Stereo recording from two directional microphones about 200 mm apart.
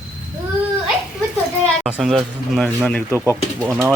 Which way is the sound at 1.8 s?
Centre (ahead or behind).